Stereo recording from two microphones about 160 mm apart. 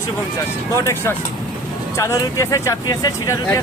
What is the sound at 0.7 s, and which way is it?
Speech, 15° left (ahead or behind).